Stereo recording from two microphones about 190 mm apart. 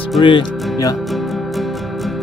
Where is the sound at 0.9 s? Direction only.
Centre (ahead or behind).